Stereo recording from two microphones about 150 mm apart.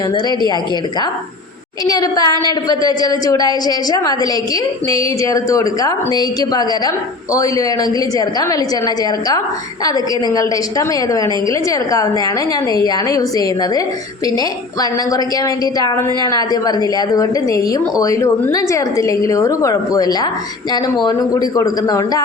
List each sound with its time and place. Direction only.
1.8 s a woman's voice: 25° left (ahead or behind)
9.8 s a woman's voice: 25° left (ahead or behind)